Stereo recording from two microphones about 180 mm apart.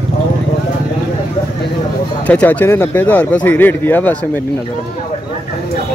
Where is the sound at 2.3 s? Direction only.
10° left (ahead or behind).